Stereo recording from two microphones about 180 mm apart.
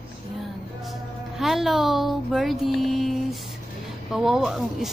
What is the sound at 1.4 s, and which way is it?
Speech, centre (ahead or behind).